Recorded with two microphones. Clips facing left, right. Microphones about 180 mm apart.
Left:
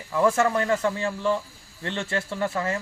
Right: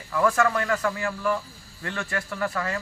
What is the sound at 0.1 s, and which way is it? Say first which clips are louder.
Speech: left 1 dB; 25° left (ahead or behind).